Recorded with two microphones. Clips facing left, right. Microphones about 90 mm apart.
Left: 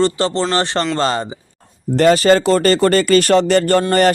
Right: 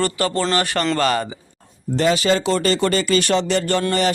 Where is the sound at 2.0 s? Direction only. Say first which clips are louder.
Left 6 dB; 50° left (ahead or behind).